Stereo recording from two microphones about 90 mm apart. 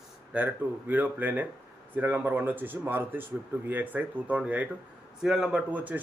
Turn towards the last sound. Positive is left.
turn(degrees=-15)  # may be behind; listen again after turning